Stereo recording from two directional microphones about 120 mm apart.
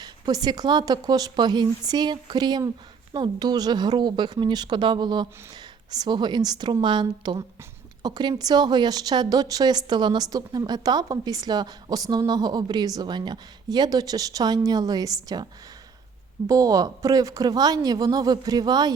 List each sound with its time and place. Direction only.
0.0 s a woman's voice: 35° right (ahead or behind)
16.5 s a woman's voice: 30° right (ahead or behind)